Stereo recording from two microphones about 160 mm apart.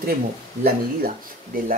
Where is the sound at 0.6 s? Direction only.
70° right (ahead or behind).